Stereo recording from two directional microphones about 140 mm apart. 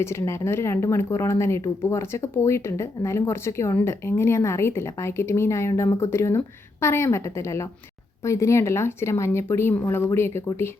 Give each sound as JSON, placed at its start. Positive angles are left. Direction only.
{"t": 0.0, "sound": "speech", "side_deg": 20}